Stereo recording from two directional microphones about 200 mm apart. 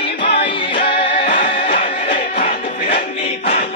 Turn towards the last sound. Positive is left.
turn(degrees=25)  # may be behind; listen again after turning